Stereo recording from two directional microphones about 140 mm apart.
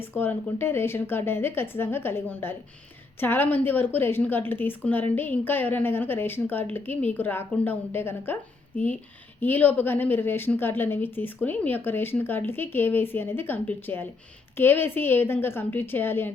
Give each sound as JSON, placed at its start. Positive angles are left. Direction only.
{"t": 0.0, "sound": "a woman's voice", "side_deg": 15}
{"t": 9.4, "sound": "a woman's voice", "side_deg": 10}